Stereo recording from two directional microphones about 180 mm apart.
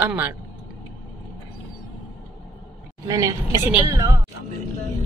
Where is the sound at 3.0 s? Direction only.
15° right (ahead or behind).